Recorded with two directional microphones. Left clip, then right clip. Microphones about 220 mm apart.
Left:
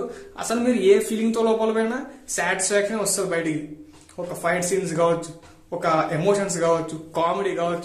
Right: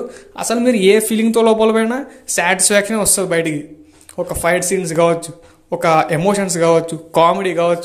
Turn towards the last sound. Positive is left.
turn(degrees=-35)  # may be behind; listen again after turning